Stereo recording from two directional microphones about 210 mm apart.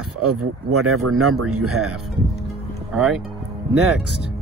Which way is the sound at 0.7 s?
90° right.